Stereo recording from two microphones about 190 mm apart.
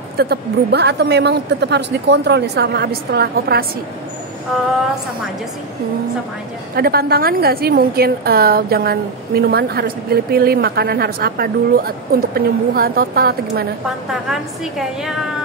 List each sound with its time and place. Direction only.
0.2 s a woman's voice: 60° right (ahead or behind)
6.7 s a woman's voice: 50° right (ahead or behind)
14.3 s a woman's voice: centre (ahead or behind)